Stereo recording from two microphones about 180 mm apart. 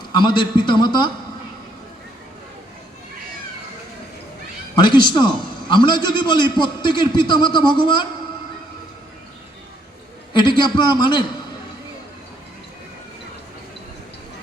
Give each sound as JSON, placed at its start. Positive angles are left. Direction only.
{"t": 0.1, "sound": "a man's voice", "side_deg": 25}
{"t": 4.8, "sound": "a man's voice", "side_deg": 25}
{"t": 10.3, "sound": "a man's voice", "side_deg": 25}